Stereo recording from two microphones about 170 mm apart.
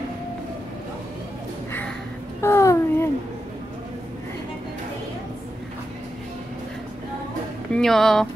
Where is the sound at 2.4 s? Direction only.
15° left (ahead or behind).